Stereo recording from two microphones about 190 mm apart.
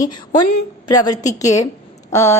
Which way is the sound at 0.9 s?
20° left (ahead or behind).